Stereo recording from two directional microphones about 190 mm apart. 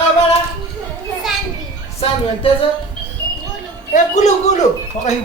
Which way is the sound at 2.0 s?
30° left (ahead or behind).